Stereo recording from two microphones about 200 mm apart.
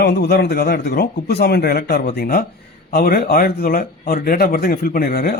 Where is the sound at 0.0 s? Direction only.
55° left (ahead or behind).